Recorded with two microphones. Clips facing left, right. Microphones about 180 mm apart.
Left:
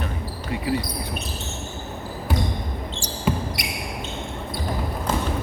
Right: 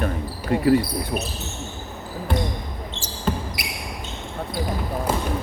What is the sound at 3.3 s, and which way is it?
Basketball bounce, 10° left (ahead or behind).